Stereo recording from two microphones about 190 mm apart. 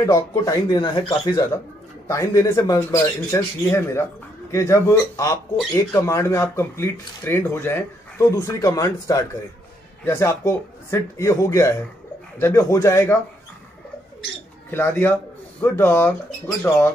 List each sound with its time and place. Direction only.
0.0 s speech: 15° left (ahead or behind)
14.7 s speech: 10° left (ahead or behind)